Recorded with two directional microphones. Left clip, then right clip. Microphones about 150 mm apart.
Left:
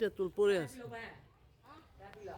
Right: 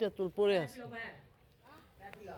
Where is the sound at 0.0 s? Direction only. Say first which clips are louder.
Even; 25° left (ahead or behind).